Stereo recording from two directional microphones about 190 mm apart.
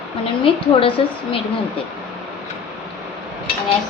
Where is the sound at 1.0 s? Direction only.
30° left (ahead or behind).